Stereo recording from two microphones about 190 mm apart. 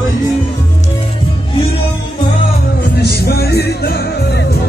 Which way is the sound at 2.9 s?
60° left (ahead or behind).